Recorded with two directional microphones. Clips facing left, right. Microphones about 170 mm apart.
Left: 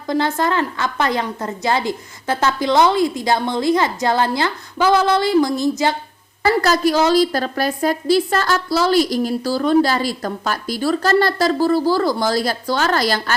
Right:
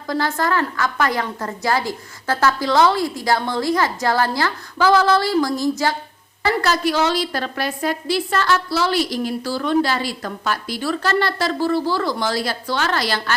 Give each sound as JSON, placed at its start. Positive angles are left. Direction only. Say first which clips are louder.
{"t": 0.1, "sound": "a woman's voice", "louder": "left 2 dB", "side_deg": 20}
{"t": 6.4, "sound": "a woman's voice", "louder": "left 4 dB", "side_deg": 40}